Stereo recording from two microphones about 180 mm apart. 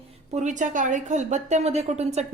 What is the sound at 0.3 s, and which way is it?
A woman's voice, 45° right (ahead or behind).